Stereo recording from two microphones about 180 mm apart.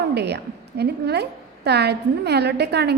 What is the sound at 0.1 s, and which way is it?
A woman's voice, 65° right (ahead or behind).